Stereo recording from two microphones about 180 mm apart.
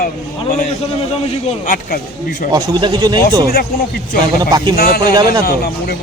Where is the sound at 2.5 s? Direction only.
25° right (ahead or behind).